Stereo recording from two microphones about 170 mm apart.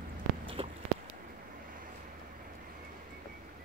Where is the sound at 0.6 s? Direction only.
35° right (ahead or behind).